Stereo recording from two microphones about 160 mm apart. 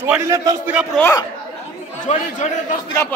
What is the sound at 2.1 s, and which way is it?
Speech, 45° left (ahead or behind).